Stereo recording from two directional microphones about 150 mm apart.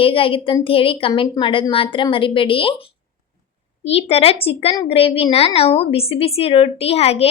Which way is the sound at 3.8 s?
40° left (ahead or behind).